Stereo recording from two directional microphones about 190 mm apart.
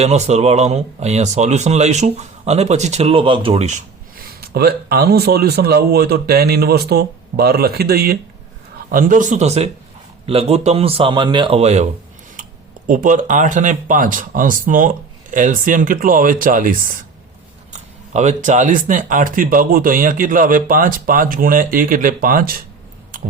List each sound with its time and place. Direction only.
0.0 s a man's voice: 35° right (ahead or behind)
12.9 s speech: 45° right (ahead or behind)
18.1 s speech: 35° right (ahead or behind)